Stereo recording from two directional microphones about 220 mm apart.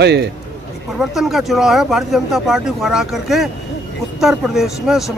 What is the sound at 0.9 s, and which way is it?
Speech, centre (ahead or behind).